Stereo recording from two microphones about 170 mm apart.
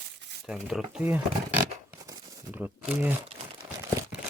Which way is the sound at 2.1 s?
10° right (ahead or behind).